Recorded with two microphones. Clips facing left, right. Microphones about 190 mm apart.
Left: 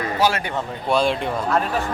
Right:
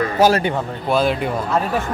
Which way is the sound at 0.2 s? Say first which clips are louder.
Right 6 dB; 40° right (ahead or behind).